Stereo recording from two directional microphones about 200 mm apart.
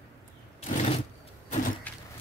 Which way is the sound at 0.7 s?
30° left (ahead or behind).